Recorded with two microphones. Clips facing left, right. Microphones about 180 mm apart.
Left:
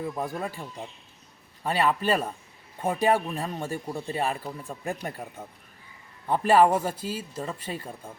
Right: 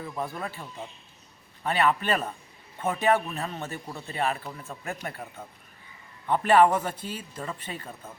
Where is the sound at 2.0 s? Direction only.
10° left (ahead or behind).